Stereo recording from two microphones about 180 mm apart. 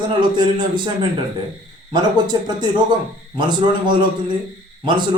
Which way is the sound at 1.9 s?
25° right (ahead or behind).